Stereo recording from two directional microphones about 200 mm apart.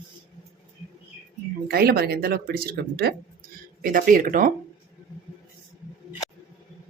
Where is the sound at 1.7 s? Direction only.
50° right (ahead or behind).